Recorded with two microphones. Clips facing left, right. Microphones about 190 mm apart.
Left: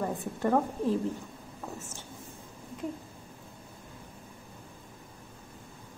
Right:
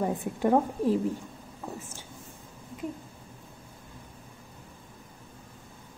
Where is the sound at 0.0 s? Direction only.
15° right (ahead or behind).